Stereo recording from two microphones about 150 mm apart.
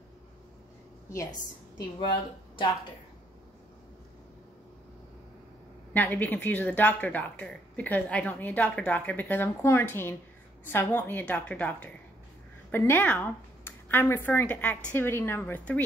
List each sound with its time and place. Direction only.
1.1 s a woman's voice: 25° left (ahead or behind)
5.9 s speech: 10° left (ahead or behind)